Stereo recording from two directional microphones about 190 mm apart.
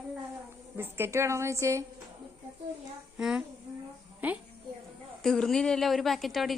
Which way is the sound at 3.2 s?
5° right (ahead or behind).